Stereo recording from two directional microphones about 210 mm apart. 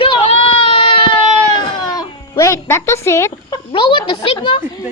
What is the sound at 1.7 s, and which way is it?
Music, 20° left (ahead or behind).